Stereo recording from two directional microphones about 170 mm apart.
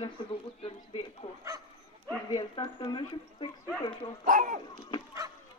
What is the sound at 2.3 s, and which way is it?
Speech, 30° left (ahead or behind).